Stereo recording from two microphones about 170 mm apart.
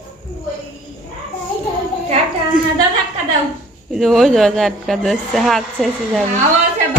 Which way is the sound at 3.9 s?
Centre (ahead or behind).